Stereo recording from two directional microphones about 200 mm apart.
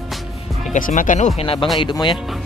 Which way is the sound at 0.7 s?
40° left (ahead or behind).